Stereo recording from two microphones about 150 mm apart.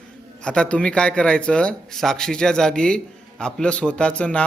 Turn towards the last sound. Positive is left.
turn(degrees=10)  # may be behind; listen again after turning